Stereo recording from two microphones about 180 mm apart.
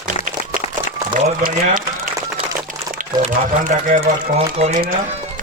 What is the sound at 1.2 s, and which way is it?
Speech, 40° right (ahead or behind).